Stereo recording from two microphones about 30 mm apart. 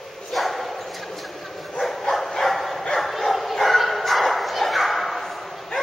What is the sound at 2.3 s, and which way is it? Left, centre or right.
Bow-wow, centre.